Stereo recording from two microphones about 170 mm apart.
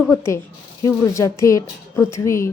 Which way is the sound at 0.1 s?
15° left (ahead or behind).